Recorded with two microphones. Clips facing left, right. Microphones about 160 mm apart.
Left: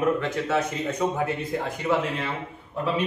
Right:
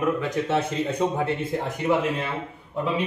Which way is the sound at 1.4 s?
15° right (ahead or behind).